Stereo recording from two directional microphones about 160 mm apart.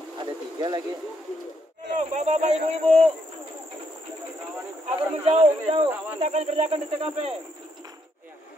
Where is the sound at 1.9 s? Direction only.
45° right (ahead or behind).